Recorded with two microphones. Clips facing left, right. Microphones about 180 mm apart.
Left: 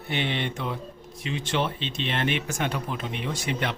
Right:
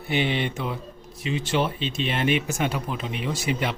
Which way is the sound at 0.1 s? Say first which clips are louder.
Right 4 dB; 5° right (ahead or behind).